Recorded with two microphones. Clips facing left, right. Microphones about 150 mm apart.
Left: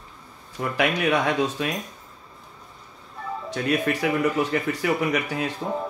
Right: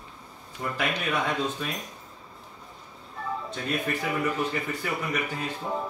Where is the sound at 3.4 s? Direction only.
85° left.